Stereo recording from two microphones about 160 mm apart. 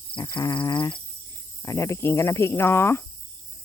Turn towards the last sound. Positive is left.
turn(degrees=15)  # may be behind; listen again after turning